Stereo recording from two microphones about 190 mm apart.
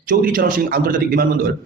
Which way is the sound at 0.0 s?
50° right (ahead or behind).